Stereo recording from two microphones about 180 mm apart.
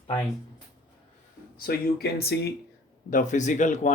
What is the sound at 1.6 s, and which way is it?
Speech, 60° left (ahead or behind).